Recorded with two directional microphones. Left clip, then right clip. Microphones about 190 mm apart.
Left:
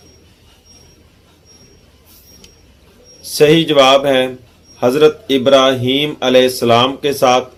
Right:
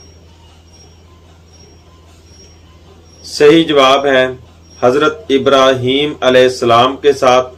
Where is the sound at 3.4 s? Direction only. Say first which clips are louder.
Right 2 dB; 45° left (ahead or behind).